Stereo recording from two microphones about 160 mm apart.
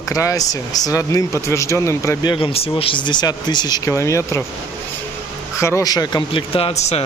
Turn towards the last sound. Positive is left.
turn(degrees=40)  # may be behind; listen again after turning